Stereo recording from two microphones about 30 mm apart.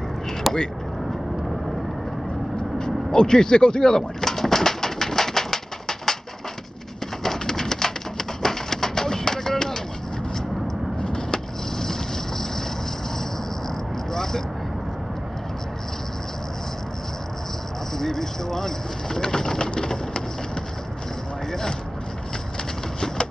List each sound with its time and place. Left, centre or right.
0.5 s vehicle: centre
2.8 s speech: left
3.9 s bird: centre
7.2 s bird: centre
11.0 s vehicle: left
14.1 s vehicle: centre
17.9 s vehicle: centre
19.6 s a sound: left
21.5 s vehicle: centre